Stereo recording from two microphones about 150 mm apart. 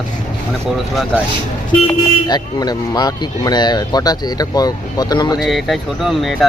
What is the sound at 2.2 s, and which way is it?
Speech, 25° left (ahead or behind).